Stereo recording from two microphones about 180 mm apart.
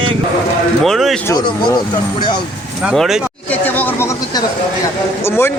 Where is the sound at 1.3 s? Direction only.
25° left (ahead or behind).